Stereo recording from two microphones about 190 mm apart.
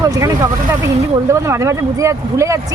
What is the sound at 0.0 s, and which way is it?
Speech, 20° right (ahead or behind).